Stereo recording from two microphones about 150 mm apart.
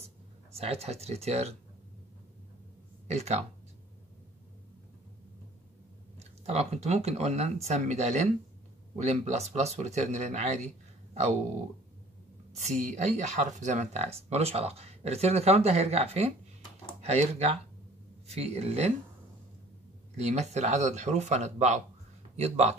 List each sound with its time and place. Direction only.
0.5 s speech: 45° right (ahead or behind)
3.1 s speech: 45° right (ahead or behind)
6.1 s speech: 45° right (ahead or behind)
12.5 s speech: 55° right (ahead or behind)
20.2 s speech: 50° right (ahead or behind)